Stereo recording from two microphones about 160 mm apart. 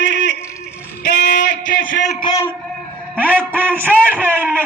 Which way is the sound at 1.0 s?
60° left (ahead or behind).